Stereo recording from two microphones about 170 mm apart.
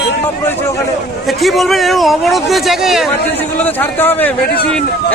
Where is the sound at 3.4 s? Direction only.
10° left (ahead or behind).